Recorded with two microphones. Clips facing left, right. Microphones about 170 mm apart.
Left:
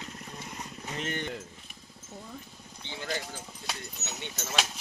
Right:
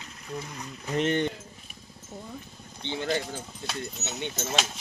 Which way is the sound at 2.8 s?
25° right (ahead or behind).